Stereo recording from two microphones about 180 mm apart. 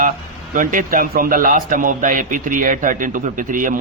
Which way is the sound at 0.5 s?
50° right (ahead or behind).